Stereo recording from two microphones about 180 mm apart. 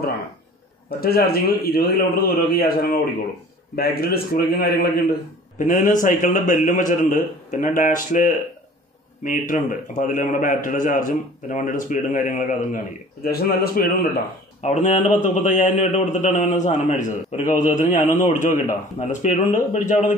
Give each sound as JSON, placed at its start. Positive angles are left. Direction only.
{"t": 0.8, "sound": "a man's voice", "side_deg": 55}
{"t": 13.2, "sound": "a man's voice", "side_deg": 55}
{"t": 14.6, "sound": "a man's voice", "side_deg": 40}